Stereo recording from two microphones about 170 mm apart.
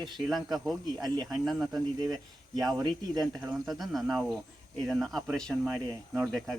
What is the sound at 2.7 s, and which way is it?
Speech, 25° right (ahead or behind).